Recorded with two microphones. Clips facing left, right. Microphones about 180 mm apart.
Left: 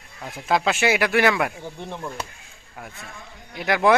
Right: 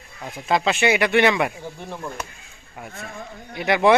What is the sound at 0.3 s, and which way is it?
Speech, 5° left (ahead or behind).